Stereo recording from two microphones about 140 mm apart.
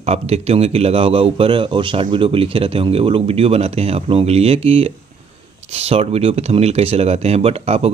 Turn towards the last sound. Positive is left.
turn(degrees=-45)  # may be behind; listen again after turning